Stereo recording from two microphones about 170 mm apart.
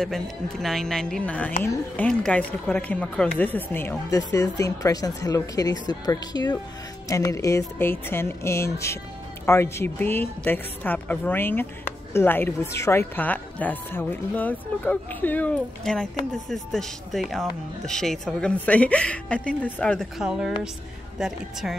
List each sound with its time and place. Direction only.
0.0 s a woman's voice: centre (ahead or behind)